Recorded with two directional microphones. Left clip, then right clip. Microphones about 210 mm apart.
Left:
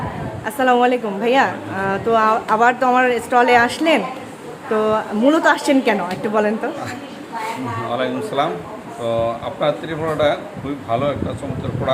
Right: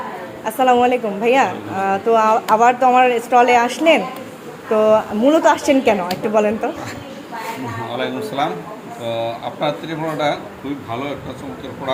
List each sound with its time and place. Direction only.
0.4 s a woman's voice: centre (ahead or behind)
7.9 s speech: 15° left (ahead or behind)